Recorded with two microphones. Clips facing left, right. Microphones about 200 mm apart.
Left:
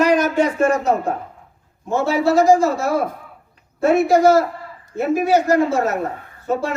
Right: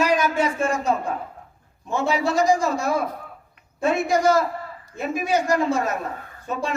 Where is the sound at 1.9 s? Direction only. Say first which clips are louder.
Left 5 dB; 15° right (ahead or behind).